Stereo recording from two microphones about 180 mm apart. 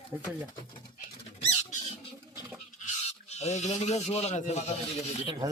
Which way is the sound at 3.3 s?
40° left (ahead or behind).